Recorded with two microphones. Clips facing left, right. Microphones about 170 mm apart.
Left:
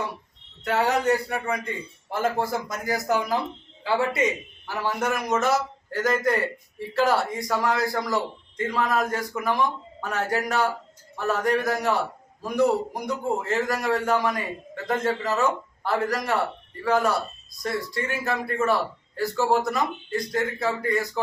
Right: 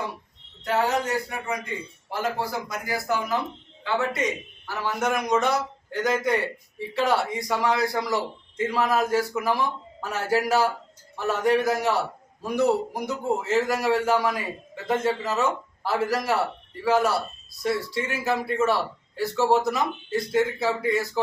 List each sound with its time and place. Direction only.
0.6 s a man's voice: 65° left (ahead or behind)
2.0 s a man's voice: 50° left (ahead or behind)
3.8 s a man's voice: 30° left (ahead or behind)
4.6 s a man's voice: 15° left (ahead or behind); by 21.2 s centre (ahead or behind)